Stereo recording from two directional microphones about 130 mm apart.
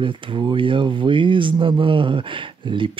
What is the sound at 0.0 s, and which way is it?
Speech, 40° right (ahead or behind).